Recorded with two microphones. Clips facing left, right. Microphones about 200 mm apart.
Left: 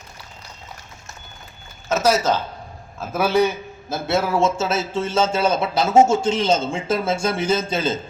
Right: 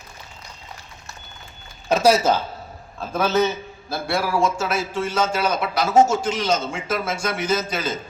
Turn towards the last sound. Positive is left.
turn(degrees=25)  # may be behind; listen again after turning